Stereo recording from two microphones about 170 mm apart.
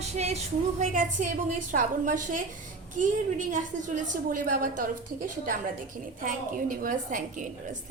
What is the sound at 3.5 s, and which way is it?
A woman's voice, 50° right (ahead or behind).